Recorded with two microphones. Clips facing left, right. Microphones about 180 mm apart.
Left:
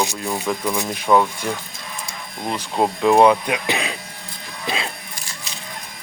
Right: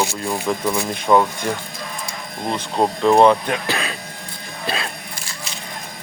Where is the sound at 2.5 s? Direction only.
5° left (ahead or behind).